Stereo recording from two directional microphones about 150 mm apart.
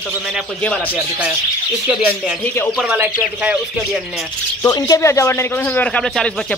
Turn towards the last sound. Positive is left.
turn(degrees=5)  # may be behind; listen again after turning